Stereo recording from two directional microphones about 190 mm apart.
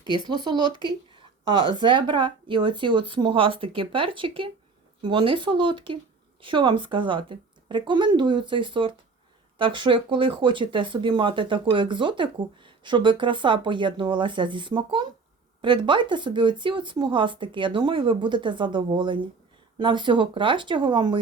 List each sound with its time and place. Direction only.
0.0 s speech: 20° right (ahead or behind)